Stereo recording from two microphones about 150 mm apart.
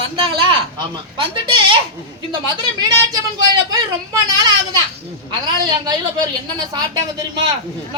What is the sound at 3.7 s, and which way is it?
A child's voice, 25° right (ahead or behind).